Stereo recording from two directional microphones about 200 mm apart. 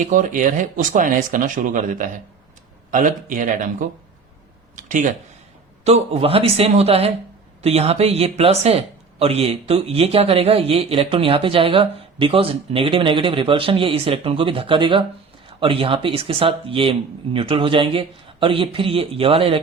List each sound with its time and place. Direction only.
0.0 s speech: 40° right (ahead or behind)